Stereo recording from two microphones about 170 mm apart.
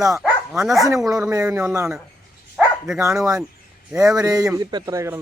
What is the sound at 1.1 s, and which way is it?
Speech, 20° right (ahead or behind).